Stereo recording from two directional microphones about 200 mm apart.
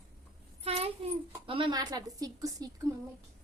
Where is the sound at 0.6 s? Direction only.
30° right (ahead or behind).